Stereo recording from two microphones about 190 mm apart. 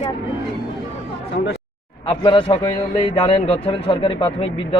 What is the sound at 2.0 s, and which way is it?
Speech, 25° left (ahead or behind).